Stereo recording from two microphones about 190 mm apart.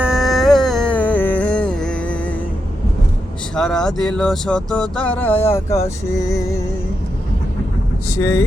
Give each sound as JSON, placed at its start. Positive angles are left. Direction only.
{"t": 0.0, "sound": "a sound", "side_deg": 0}
{"t": 3.5, "sound": "speech", "side_deg": 5}
{"t": 8.1, "sound": "speech", "side_deg": 15}